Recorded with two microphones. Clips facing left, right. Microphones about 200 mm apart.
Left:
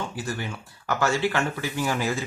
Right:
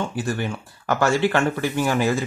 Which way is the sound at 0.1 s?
55° right (ahead or behind).